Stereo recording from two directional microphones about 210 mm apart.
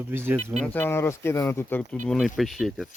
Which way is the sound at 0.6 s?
10° left (ahead or behind).